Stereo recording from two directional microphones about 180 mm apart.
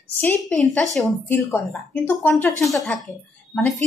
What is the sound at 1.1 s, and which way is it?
Speech, 15° left (ahead or behind).